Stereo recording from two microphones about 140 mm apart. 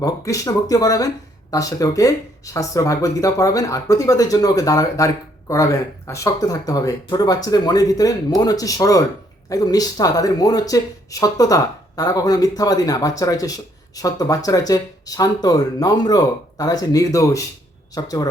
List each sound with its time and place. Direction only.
0.0 s speech: 25° left (ahead or behind)